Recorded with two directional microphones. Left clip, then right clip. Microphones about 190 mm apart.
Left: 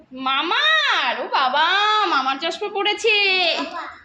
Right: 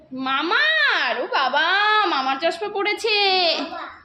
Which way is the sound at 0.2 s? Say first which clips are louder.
Even; 15° right (ahead or behind).